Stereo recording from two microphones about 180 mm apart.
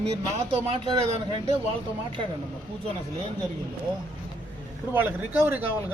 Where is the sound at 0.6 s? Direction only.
35° right (ahead or behind).